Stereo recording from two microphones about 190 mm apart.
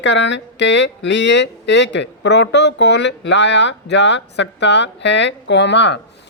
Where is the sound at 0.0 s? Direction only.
70° left (ahead or behind).